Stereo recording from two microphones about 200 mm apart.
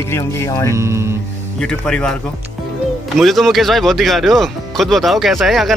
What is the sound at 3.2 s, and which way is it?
Speech, centre (ahead or behind).